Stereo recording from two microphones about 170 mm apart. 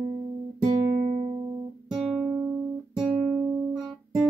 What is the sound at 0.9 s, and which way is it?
Music, 25° right (ahead or behind).